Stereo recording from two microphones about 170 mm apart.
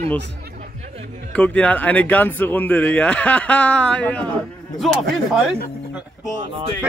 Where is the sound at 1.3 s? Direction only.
10° left (ahead or behind).